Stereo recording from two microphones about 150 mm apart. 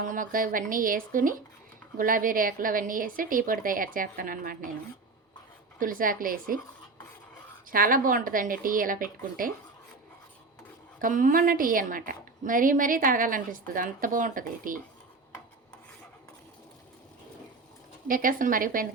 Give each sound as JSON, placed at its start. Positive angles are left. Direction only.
{"t": 0.1, "sound": "speech", "side_deg": -65}
{"t": 5.8, "sound": "speech", "side_deg": -70}
{"t": 7.7, "sound": "speech", "side_deg": -70}
{"t": 11.0, "sound": "a woman's voice", "side_deg": -65}
{"t": 18.1, "sound": "speech", "side_deg": -65}